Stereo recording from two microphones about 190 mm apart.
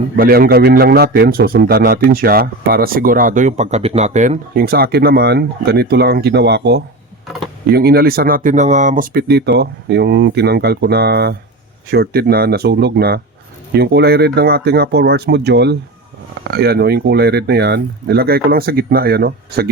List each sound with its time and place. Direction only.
0.2 s a man's voice: 50° right (ahead or behind)